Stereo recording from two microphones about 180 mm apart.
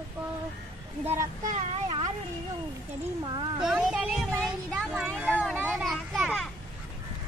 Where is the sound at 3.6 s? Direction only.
5° right (ahead or behind).